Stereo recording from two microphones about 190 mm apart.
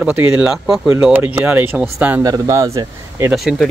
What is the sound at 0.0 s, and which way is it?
Speech, 10° right (ahead or behind).